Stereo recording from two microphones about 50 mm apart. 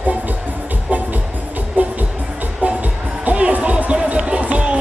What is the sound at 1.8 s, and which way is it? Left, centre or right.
Music, right.